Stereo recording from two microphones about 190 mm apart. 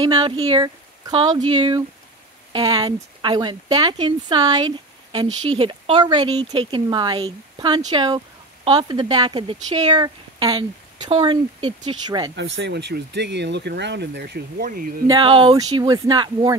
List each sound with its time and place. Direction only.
0.0 s speech: 25° right (ahead or behind)
12.4 s speech: 75° right (ahead or behind); by 15.0 s 50° right (ahead or behind)
15.0 s speech: 25° right (ahead or behind)